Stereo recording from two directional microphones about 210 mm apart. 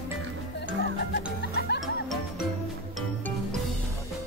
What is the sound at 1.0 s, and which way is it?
Music, 50° left (ahead or behind).